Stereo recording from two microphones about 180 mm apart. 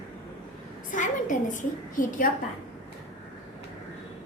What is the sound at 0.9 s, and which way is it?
A woman's voice, 45° left (ahead or behind).